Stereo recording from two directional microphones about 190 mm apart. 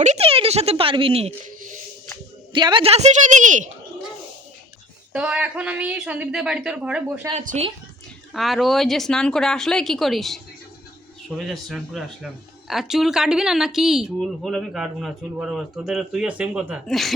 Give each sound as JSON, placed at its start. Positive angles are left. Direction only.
{"t": 0.0, "sound": "speech", "side_deg": -35}
{"t": 2.5, "sound": "a woman's voice", "side_deg": -25}
{"t": 5.1, "sound": "speech", "side_deg": -5}
{"t": 7.3, "sound": "a woman's voice", "side_deg": -35}
{"t": 8.3, "sound": "speech", "side_deg": 0}